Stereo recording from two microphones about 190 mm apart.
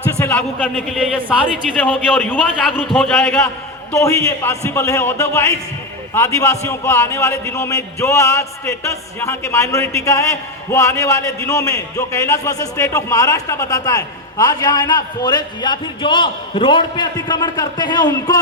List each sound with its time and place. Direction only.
0.0 s a man's voice: 10° left (ahead or behind)
3.9 s a man's voice: 15° left (ahead or behind)